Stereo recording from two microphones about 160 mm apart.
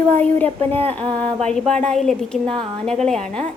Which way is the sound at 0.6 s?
35° right (ahead or behind).